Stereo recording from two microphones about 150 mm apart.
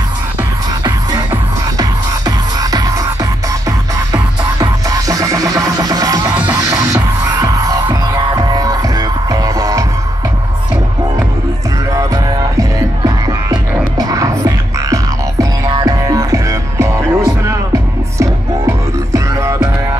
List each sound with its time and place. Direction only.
0.8 s music: 25° right (ahead or behind)
4.1 s music: 25° right (ahead or behind)
11.9 s music: 20° right (ahead or behind)